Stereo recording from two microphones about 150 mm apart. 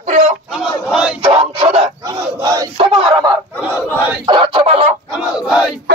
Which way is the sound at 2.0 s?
25° right (ahead or behind).